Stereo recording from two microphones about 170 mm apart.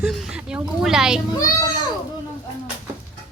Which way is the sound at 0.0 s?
5° right (ahead or behind).